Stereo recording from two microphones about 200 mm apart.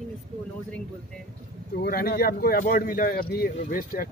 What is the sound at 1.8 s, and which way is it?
Speech, 50° left (ahead or behind).